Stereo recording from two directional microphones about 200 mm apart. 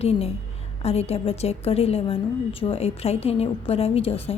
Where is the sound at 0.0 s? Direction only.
30° left (ahead or behind).